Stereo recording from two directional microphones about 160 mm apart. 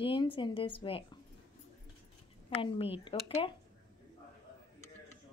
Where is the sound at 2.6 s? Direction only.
35° left (ahead or behind).